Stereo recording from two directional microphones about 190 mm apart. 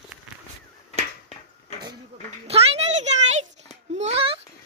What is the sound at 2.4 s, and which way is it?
A child's voice, 30° right (ahead or behind).